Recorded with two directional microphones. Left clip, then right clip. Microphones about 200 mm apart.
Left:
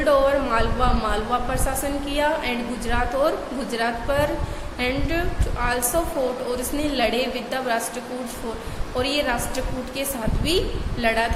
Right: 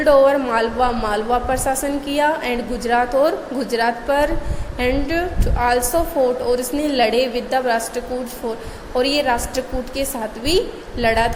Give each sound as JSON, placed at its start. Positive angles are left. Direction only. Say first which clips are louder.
{"t": 0.0, "sound": "a woman's voice", "louder": "right 5 dB", "side_deg": -25}